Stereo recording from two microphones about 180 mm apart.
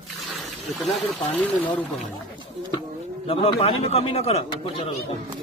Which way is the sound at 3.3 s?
30° left (ahead or behind).